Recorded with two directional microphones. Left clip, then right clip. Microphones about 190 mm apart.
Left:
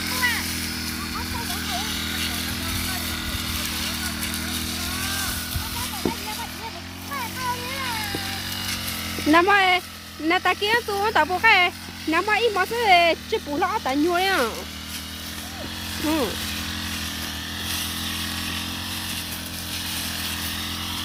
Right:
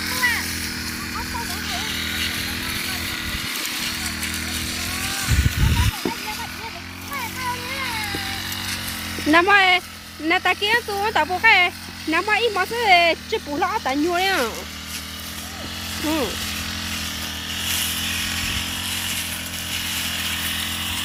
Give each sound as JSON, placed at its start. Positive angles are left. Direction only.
{"t": 0.2, "sound": "music", "side_deg": 65}
{"t": 2.0, "sound": "chainsaw", "side_deg": 65}
{"t": 9.3, "sound": "speech", "side_deg": 0}
{"t": 17.6, "sound": "chainsaw", "side_deg": -20}
{"t": 19.7, "sound": "vehicle", "side_deg": -10}